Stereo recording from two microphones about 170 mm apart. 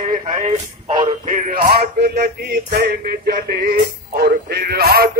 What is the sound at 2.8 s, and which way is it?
Speech, 70° right (ahead or behind).